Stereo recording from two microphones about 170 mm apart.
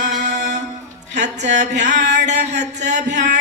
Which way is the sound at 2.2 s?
45° right (ahead or behind).